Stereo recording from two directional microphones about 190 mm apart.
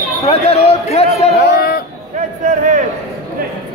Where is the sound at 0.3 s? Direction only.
35° left (ahead or behind).